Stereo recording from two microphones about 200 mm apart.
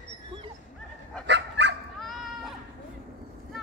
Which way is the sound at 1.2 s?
60° right (ahead or behind).